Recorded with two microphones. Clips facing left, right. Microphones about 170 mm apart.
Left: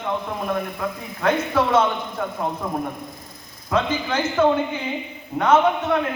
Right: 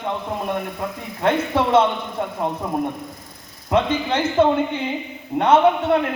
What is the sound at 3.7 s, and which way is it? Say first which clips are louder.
Speech: right 3 dB; 30° right (ahead or behind).